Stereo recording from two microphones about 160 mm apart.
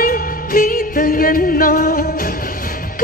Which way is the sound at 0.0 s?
65° left (ahead or behind).